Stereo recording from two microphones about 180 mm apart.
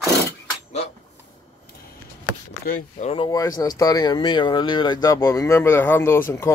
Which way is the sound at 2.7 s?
50° left (ahead or behind).